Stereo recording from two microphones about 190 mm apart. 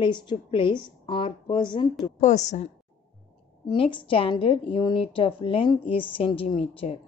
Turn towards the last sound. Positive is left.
turn(degrees=30)  # may be behind; listen again after turning